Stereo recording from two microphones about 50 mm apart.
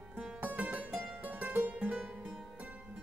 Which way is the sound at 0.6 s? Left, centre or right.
Right.